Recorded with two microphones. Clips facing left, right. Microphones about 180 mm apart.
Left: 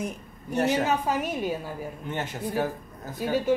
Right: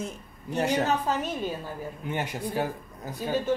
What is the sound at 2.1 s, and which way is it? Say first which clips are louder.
Speech: right 1 dB; 10° right (ahead or behind).